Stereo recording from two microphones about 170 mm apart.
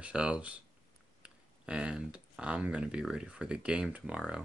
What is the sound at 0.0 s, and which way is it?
Speech, 5° right (ahead or behind).